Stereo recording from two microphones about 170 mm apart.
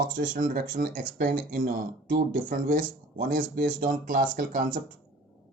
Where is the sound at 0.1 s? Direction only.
55° right (ahead or behind).